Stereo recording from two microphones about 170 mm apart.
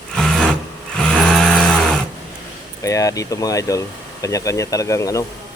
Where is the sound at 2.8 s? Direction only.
20° left (ahead or behind).